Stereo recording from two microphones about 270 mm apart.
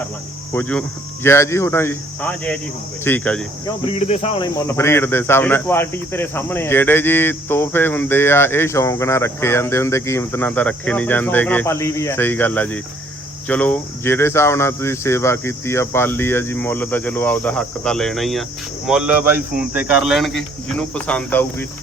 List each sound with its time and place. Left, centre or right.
0.5 s speech: centre
3.8 s cricket: left
4.5 s speech: centre